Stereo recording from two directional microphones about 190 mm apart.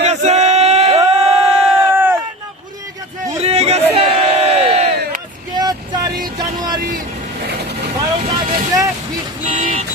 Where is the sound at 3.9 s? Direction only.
35° right (ahead or behind).